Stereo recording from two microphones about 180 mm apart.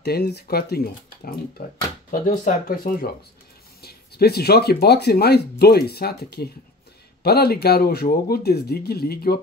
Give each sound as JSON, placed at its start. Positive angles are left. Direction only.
{"t": 0.0, "sound": "speech", "side_deg": 65}